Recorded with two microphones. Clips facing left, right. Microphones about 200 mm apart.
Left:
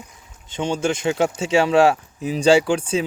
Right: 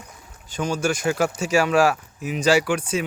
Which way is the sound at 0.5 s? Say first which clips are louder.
Left 2 dB; 25° left (ahead or behind).